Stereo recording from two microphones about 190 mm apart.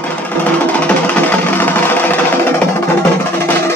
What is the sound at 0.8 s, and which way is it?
Music, 10° left (ahead or behind).